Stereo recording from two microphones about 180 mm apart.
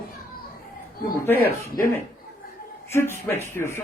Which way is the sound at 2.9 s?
15° left (ahead or behind).